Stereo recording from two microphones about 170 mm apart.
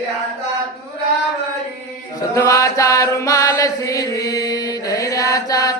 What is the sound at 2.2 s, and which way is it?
Chant, 20° left (ahead or behind).